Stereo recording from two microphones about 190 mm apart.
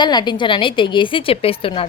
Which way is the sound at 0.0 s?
20° left (ahead or behind).